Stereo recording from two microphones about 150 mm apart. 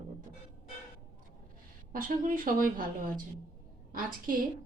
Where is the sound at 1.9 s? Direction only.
65° right (ahead or behind).